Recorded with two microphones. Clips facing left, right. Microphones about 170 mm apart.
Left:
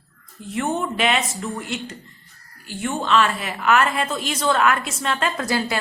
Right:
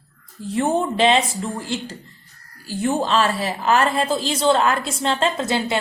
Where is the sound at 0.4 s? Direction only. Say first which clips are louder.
Right 4 dB; 35° right (ahead or behind).